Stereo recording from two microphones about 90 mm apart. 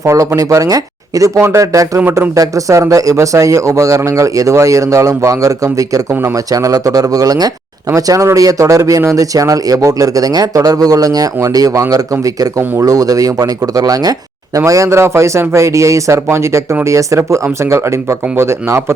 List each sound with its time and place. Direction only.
0.0 s speech: 35° right (ahead or behind)